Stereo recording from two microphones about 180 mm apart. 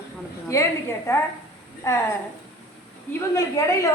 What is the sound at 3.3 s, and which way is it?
Speech, 15° left (ahead or behind).